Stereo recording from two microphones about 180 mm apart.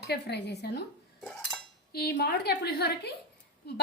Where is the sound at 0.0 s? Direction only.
65° left (ahead or behind).